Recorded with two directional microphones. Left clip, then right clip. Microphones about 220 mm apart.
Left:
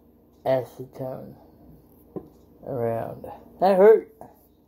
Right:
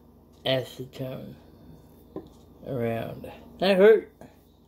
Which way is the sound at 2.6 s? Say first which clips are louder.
Left 3 dB; 35° right (ahead or behind).